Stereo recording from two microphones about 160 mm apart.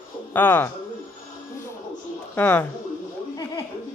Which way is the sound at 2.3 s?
10° left (ahead or behind).